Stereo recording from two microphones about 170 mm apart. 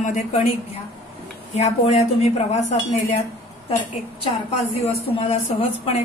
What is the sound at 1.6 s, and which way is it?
Speech, 40° left (ahead or behind).